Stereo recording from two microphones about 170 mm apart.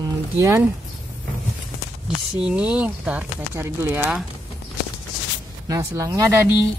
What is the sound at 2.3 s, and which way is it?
Speech, 5° right (ahead or behind).